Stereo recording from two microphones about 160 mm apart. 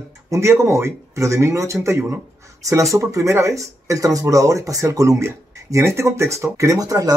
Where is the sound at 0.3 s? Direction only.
15° right (ahead or behind).